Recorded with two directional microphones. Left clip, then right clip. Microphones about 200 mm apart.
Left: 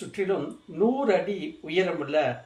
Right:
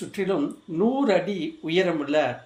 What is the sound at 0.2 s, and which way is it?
Speech, 45° right (ahead or behind).